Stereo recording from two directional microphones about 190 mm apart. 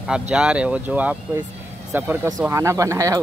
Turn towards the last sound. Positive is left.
turn(degrees=-15)  # may be behind; listen again after turning